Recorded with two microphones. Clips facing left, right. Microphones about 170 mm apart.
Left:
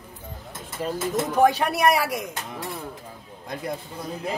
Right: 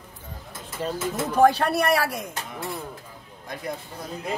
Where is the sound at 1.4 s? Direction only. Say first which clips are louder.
Right 1 dB; 10° left (ahead or behind).